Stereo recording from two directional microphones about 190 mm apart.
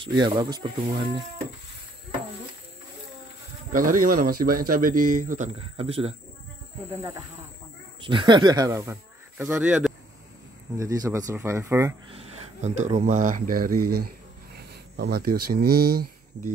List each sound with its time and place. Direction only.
0.0 s speech: 25° right (ahead or behind)
3.7 s speech: 45° right (ahead or behind)
6.9 s speech: 15° right (ahead or behind)
8.0 s speech: 25° right (ahead or behind); by 9.9 s 5° right (ahead or behind)
10.8 s speech: 15° right (ahead or behind)
12.1 s speech: 35° right (ahead or behind); by 16.4 s 55° right (ahead or behind)